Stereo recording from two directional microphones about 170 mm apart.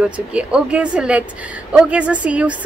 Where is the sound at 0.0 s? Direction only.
5° right (ahead or behind).